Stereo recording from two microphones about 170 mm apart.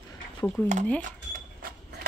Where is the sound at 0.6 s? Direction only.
10° left (ahead or behind).